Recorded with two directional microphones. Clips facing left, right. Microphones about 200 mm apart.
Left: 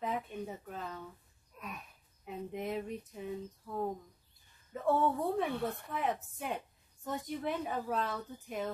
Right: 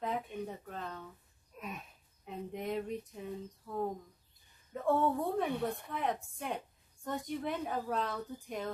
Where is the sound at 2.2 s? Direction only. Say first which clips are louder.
Even; 5° left (ahead or behind).